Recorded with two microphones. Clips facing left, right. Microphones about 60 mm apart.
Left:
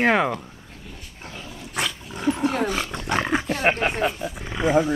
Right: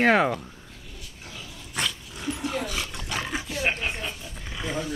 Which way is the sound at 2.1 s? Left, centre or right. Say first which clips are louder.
Left 8 dB; left.